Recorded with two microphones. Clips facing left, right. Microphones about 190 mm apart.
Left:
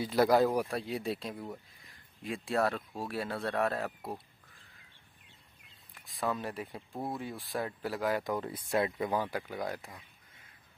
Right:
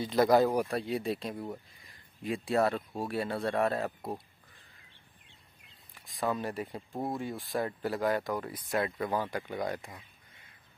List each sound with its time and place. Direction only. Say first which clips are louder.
0.0 s speech: right 1 dB; 5° left (ahead or behind)
5.9 s speech: right 2 dB; centre (ahead or behind)
8.2 s speech: even; 20° left (ahead or behind)
8.9 s speech: even; 10° left (ahead or behind)